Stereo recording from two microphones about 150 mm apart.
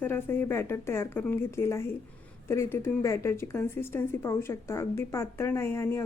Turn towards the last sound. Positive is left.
turn(degrees=15)  # may be behind; listen again after turning